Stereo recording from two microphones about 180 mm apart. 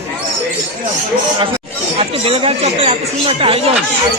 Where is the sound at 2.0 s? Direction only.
35° right (ahead or behind).